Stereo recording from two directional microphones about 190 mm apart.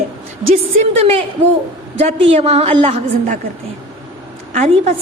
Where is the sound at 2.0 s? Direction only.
35° right (ahead or behind).